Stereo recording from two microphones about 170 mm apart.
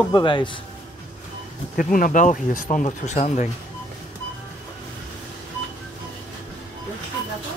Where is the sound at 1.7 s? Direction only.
50° left (ahead or behind).